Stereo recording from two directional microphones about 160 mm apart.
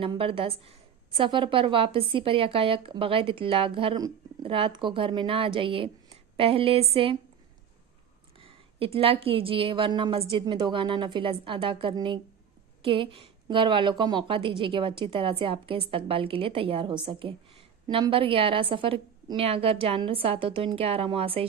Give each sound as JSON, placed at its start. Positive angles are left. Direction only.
{"t": 0.0, "sound": "a woman's voice", "side_deg": -35}
{"t": 8.4, "sound": "a woman's voice", "side_deg": -35}